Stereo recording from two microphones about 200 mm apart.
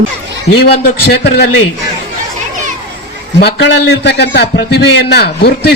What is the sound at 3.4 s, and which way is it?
A man's voice, 60° left (ahead or behind).